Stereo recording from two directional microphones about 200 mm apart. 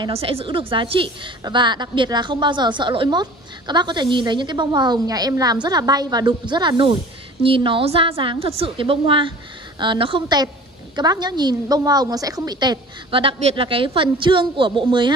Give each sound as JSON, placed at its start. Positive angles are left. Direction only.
{"t": 0.0, "sound": "a woman's voice", "side_deg": -30}